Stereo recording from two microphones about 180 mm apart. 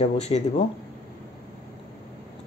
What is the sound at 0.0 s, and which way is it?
Speech, 40° left (ahead or behind).